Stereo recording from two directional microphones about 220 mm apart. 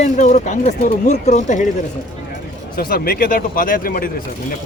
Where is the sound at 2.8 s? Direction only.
40° left (ahead or behind).